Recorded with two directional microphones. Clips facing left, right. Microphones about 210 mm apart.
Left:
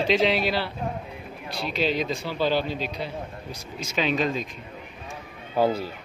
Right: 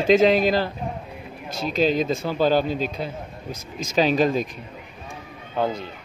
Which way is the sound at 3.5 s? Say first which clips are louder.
Right 3 dB; 90° right.